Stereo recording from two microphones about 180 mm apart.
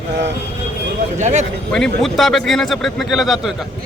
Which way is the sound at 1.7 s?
Centre (ahead or behind).